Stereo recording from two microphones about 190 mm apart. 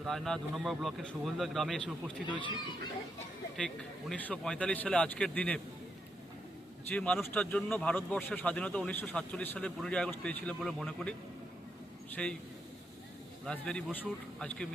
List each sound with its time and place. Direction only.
0.0 s speech: centre (ahead or behind)
4.1 s speech: 5° left (ahead or behind)
6.9 s a man's voice: 5° left (ahead or behind)
12.1 s speech: 5° left (ahead or behind)
13.4 s speech: 5° left (ahead or behind)